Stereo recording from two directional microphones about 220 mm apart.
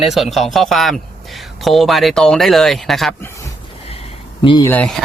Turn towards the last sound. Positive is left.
turn(degrees=5)  # may be behind; listen again after turning